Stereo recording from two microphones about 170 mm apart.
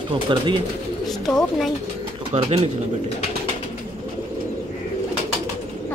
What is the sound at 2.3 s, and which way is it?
Speech, 35° right (ahead or behind).